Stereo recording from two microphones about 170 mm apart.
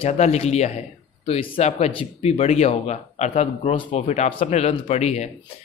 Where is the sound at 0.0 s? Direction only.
40° left (ahead or behind).